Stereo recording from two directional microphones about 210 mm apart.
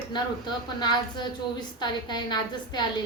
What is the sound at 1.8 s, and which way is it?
A woman's voice, 20° left (ahead or behind).